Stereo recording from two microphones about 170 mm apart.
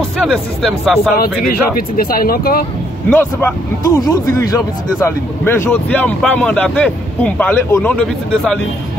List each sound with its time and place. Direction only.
0.2 s speech: centre (ahead or behind)
1.4 s speech: 60° left (ahead or behind)
3.1 s speech: 10° left (ahead or behind)